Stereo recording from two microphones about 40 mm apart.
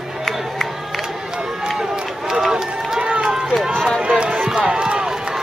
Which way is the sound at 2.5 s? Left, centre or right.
Right.